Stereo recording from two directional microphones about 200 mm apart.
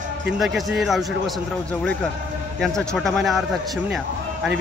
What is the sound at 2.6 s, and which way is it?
Speech, centre (ahead or behind).